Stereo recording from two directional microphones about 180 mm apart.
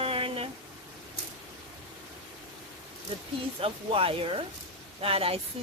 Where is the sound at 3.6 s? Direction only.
30° right (ahead or behind).